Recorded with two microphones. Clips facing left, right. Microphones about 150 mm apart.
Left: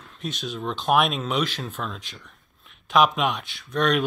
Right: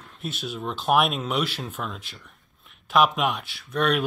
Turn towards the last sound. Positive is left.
turn(degrees=-5)  # may be behind; listen again after turning